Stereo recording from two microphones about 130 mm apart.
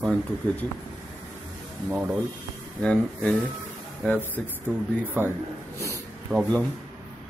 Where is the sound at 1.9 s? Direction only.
15° right (ahead or behind).